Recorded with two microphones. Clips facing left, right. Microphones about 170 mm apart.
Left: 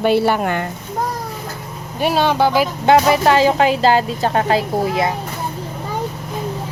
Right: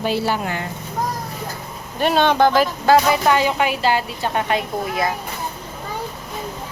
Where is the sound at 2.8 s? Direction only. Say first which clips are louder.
Left 3 dB; 25° left (ahead or behind).